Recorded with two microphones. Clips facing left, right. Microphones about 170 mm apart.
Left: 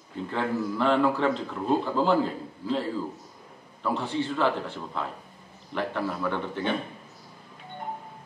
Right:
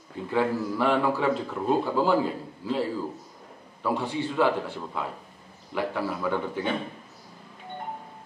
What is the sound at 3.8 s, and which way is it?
Speech, 10° right (ahead or behind).